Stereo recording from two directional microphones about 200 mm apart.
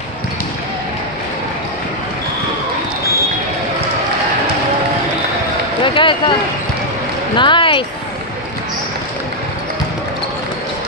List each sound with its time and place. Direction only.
5.9 s speech: 25° left (ahead or behind)
7.3 s speech: 25° left (ahead or behind)